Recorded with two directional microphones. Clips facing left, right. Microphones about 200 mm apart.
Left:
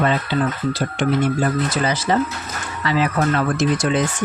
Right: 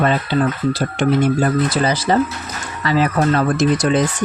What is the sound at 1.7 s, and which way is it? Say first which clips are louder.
Speech: right 3 dB; 35° right (ahead or behind).